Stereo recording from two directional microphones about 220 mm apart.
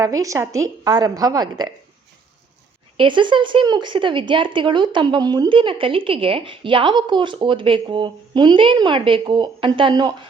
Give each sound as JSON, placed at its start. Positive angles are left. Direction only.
{"t": 0.0, "sound": "a woman's voice", "side_deg": -15}
{"t": 3.0, "sound": "speech", "side_deg": -20}